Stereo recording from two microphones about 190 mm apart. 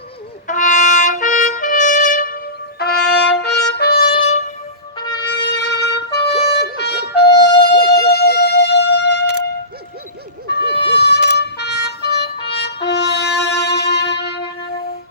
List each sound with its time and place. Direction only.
0.4 s trumpet: 40° left (ahead or behind)
4.3 s music: 35° left (ahead or behind)
5.1 s music: 60° left (ahead or behind)
10.5 s music: 60° left (ahead or behind)